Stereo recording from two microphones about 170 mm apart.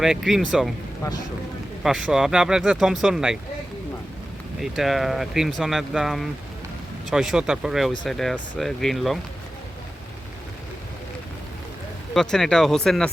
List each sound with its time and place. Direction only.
0.0 s speech: centre (ahead or behind)
1.0 s speech: 20° left (ahead or behind)
1.8 s speech: 5° right (ahead or behind)
4.6 s speech: centre (ahead or behind)
12.1 s speech: 5° left (ahead or behind)